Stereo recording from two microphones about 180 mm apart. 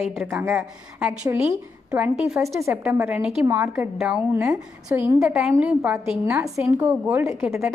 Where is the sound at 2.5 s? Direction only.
15° right (ahead or behind).